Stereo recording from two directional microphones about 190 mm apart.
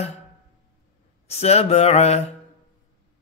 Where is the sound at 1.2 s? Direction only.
35° left (ahead or behind).